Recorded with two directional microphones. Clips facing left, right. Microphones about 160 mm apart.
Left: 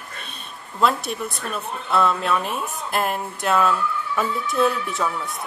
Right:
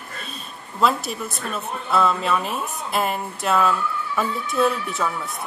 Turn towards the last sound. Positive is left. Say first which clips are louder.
# even
turn(degrees=0)  # may be behind; listen again after turning